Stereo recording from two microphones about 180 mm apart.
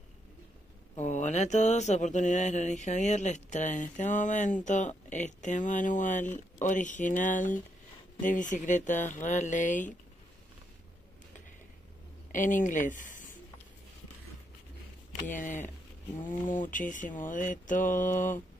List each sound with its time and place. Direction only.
0.9 s mantra: 40° left (ahead or behind)
12.3 s speech: 45° left (ahead or behind)
15.1 s mantra: 45° left (ahead or behind)